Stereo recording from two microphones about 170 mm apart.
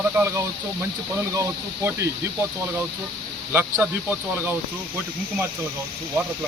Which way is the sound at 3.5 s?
15° right (ahead or behind).